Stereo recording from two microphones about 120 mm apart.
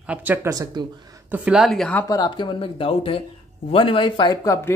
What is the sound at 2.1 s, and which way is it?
Speech, 35° left (ahead or behind).